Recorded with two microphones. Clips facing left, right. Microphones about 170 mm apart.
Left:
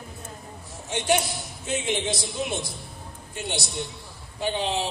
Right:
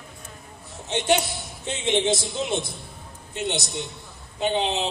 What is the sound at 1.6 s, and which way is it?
A man's voice, 25° right (ahead or behind).